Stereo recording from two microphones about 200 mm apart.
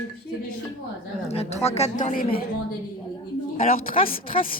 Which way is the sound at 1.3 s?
30° left (ahead or behind).